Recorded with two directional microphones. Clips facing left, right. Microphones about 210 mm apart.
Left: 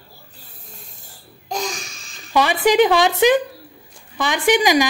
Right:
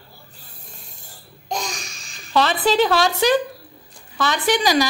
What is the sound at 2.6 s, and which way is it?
Speech, 15° left (ahead or behind).